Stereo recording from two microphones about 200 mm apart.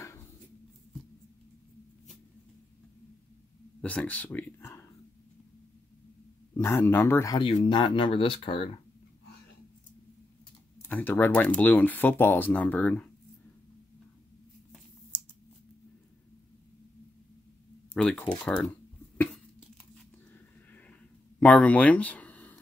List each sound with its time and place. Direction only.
3.8 s speech: 5° left (ahead or behind)
6.5 s speech: 10° left (ahead or behind)
7.4 s speech: 25° left (ahead or behind)
10.8 s speech: 10° left (ahead or behind)
17.9 s speech: 5° left (ahead or behind)
21.4 s a sound: 5° left (ahead or behind)